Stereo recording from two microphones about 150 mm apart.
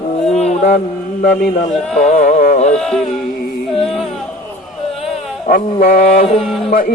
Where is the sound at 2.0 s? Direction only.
50° left (ahead or behind).